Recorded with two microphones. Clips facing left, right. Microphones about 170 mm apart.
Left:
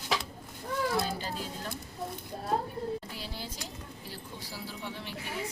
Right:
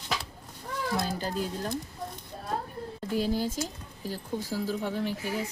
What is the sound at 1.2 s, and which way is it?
Speech, 45° right (ahead or behind).